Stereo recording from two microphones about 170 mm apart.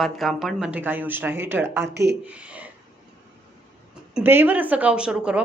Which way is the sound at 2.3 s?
5° right (ahead or behind).